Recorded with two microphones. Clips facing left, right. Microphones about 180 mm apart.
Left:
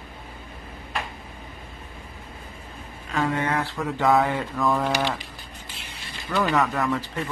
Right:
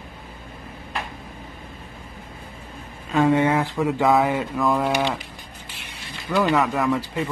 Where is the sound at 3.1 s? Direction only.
20° right (ahead or behind).